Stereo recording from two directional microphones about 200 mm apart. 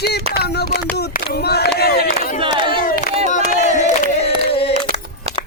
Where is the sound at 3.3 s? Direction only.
35° left (ahead or behind).